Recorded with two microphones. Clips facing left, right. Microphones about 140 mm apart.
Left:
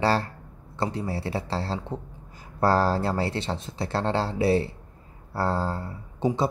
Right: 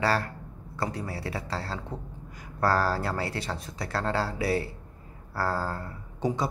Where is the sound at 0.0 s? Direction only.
30° left (ahead or behind).